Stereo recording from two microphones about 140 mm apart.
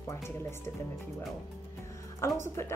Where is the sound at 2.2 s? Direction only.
20° left (ahead or behind).